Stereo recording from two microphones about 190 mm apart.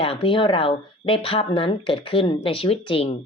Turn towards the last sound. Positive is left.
turn(degrees=30)  # may be behind; listen again after turning